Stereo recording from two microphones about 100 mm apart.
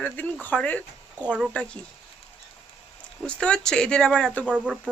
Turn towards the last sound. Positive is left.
turn(degrees=-10)  # may be behind; listen again after turning